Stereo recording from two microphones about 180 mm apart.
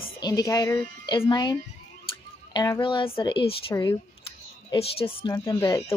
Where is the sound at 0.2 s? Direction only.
20° left (ahead or behind).